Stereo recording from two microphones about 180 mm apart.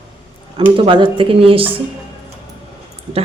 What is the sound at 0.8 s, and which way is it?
Speech, 30° right (ahead or behind).